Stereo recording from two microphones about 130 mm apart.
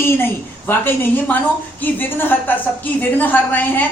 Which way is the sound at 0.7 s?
15° left (ahead or behind).